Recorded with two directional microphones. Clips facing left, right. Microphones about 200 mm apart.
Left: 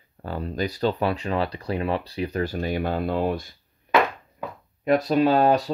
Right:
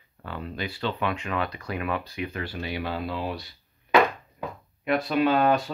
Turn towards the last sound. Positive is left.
turn(degrees=35)  # may be behind; listen again after turning